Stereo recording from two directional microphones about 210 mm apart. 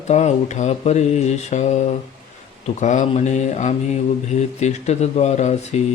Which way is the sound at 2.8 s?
35° left (ahead or behind).